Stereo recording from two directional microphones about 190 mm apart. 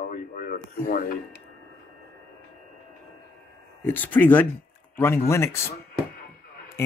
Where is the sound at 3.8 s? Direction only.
10° left (ahead or behind).